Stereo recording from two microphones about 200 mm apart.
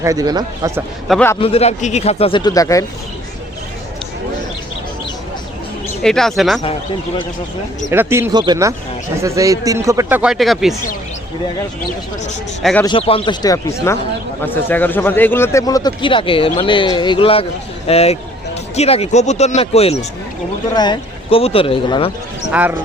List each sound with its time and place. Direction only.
0.0 s a man's voice: 15° right (ahead or behind)
1.0 s speech: centre (ahead or behind)
1.4 s a man's voice: 30° left (ahead or behind)
6.0 s speech: centre (ahead or behind)
7.9 s a man's voice: 10° right (ahead or behind)
12.8 s a man's voice: 25° left (ahead or behind)